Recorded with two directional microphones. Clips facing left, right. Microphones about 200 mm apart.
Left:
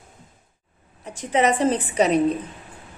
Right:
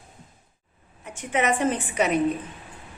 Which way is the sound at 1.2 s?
35° left (ahead or behind).